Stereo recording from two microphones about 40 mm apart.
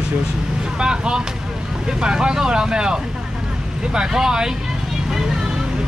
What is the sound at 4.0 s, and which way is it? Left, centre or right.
Speech, centre.